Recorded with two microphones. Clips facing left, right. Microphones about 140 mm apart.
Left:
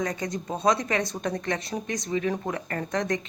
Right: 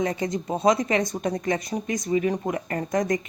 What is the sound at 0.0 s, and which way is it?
Speech, 25° right (ahead or behind).